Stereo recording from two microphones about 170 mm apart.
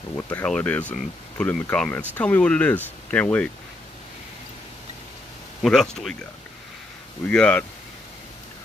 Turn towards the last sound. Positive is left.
turn(degrees=5)  # may be behind; listen again after turning